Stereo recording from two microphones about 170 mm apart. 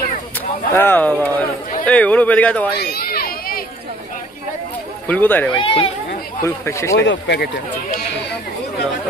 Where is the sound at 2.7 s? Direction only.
70° left (ahead or behind).